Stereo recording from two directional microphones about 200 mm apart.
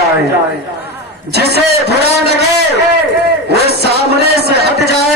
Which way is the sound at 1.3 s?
55° right (ahead or behind).